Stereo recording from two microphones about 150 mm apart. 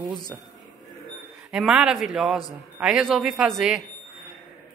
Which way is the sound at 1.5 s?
5° right (ahead or behind).